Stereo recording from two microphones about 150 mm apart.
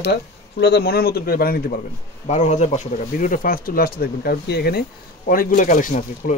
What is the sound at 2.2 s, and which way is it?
Speech, 50° left (ahead or behind).